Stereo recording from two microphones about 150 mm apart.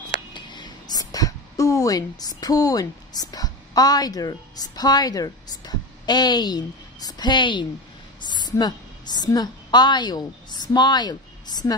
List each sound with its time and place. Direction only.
0.3 s a woman's voice: 30° left (ahead or behind)